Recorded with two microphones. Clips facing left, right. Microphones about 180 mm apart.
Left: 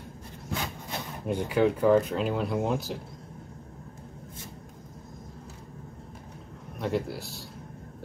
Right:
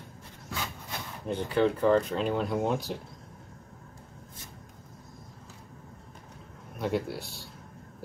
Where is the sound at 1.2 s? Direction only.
10° left (ahead or behind).